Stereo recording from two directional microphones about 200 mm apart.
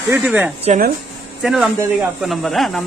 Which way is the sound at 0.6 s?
35° right (ahead or behind).